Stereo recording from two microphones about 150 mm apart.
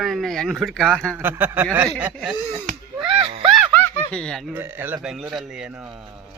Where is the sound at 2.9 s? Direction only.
40° right (ahead or behind).